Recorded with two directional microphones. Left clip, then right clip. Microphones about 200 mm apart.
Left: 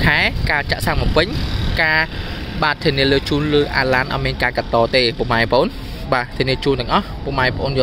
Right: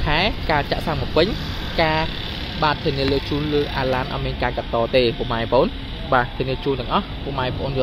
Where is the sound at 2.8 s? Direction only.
5° left (ahead or behind).